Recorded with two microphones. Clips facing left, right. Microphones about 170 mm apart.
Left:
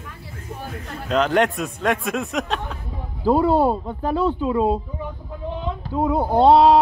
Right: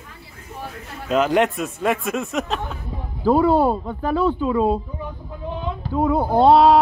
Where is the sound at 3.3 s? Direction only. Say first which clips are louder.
Right 1 dB; 25° left (ahead or behind).